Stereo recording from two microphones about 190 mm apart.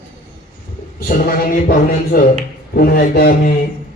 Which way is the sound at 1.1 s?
50° left (ahead or behind).